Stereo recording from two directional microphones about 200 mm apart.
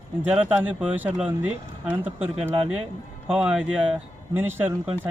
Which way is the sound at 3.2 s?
5° right (ahead or behind).